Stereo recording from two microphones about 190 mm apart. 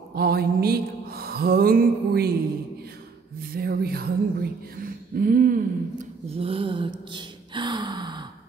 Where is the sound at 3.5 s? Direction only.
55° right (ahead or behind).